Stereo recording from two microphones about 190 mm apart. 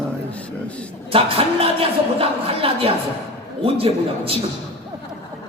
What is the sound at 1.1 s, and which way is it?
A man's voice, 30° right (ahead or behind).